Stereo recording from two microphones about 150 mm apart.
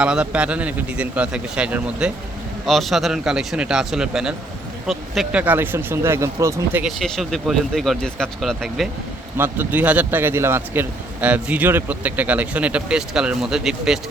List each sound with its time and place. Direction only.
0.0 s speech: 5° right (ahead or behind)
5.4 s speech: 15° right (ahead or behind)
6.8 s speech: centre (ahead or behind)
9.4 s speech: 10° right (ahead or behind)